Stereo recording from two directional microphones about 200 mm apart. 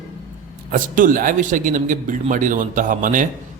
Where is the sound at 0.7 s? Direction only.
40° right (ahead or behind).